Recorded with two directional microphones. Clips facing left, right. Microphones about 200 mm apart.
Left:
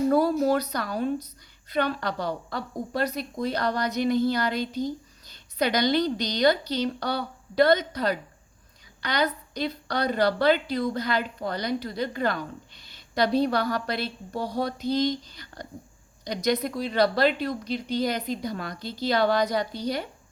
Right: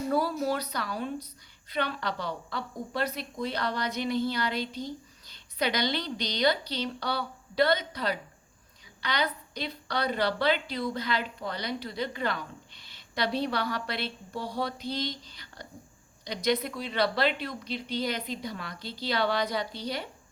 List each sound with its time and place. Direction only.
0.1 s a woman's voice: 45° left (ahead or behind)